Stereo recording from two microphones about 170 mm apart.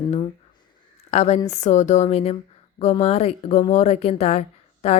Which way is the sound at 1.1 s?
40° left (ahead or behind).